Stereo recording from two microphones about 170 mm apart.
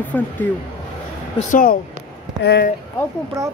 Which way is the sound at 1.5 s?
55° left (ahead or behind).